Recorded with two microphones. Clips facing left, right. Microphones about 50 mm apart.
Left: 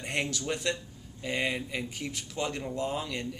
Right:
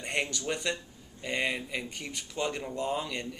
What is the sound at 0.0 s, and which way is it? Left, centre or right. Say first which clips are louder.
Speech: even; centre.